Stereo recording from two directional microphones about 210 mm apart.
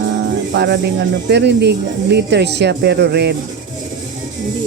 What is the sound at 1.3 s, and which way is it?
Speech, 55° right (ahead or behind).